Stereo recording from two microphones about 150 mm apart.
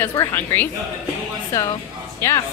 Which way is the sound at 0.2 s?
20° left (ahead or behind).